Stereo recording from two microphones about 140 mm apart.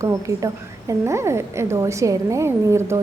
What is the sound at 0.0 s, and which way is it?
A woman's voice, 20° right (ahead or behind).